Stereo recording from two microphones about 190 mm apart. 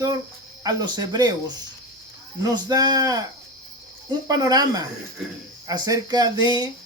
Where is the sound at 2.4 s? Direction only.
20° right (ahead or behind).